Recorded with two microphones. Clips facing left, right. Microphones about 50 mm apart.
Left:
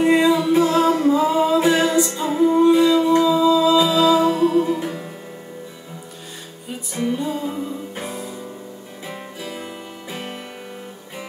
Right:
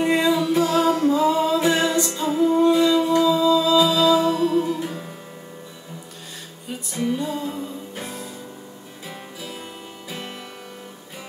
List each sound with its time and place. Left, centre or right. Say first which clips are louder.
0.0 s music: left 4 dB; centre
6.9 s music: left 2 dB; centre